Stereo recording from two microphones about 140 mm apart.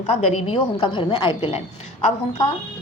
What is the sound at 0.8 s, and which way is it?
Speech, 35° left (ahead or behind).